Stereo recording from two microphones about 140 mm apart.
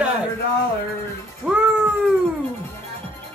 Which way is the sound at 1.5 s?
5° right (ahead or behind).